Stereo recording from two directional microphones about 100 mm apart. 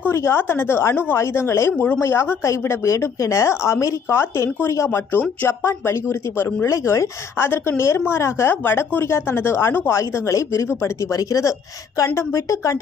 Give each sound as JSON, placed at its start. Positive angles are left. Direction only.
{"t": 0.0, "sound": "speech", "side_deg": 25}